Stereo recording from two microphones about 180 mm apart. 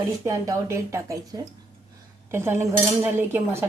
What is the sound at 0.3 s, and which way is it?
Speech, 15° right (ahead or behind).